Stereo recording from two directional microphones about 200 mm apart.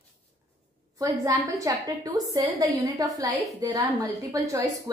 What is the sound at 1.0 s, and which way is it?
A woman's voice, 15° right (ahead or behind).